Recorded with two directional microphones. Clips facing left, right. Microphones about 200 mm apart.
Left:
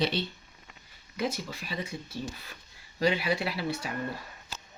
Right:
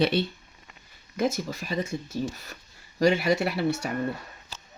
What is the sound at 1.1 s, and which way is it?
Speech, 45° right (ahead or behind).